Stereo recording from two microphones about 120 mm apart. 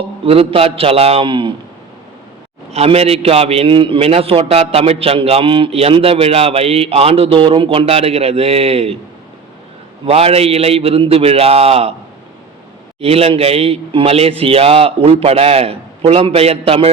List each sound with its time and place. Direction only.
0.3 s a man's voice: 55° right (ahead or behind)
2.7 s a man's voice: 55° right (ahead or behind)
10.1 s a man's voice: 55° right (ahead or behind)
13.0 s a man's voice: 55° right (ahead or behind)